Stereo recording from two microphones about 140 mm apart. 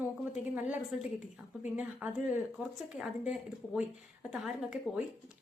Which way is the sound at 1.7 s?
10° right (ahead or behind).